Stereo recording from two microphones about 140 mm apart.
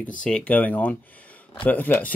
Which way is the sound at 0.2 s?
5° left (ahead or behind).